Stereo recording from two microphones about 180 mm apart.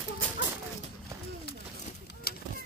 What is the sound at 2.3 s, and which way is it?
Vehicle, 60° left (ahead or behind).